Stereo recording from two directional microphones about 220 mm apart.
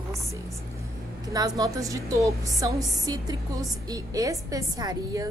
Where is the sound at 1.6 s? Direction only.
15° right (ahead or behind).